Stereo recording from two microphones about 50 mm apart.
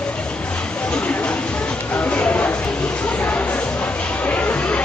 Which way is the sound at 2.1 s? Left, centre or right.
Left.